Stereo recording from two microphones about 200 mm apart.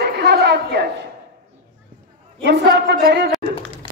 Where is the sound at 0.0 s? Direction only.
55° right (ahead or behind).